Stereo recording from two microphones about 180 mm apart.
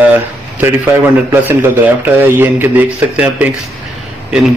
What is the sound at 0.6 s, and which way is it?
Speech, 10° right (ahead or behind).